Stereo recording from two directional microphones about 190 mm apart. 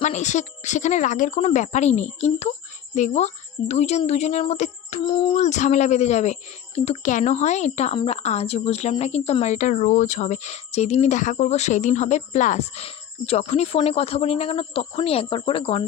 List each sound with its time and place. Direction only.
0.0 s speech: 40° left (ahead or behind)